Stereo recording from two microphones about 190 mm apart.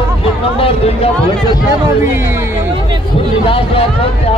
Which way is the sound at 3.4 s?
30° left (ahead or behind).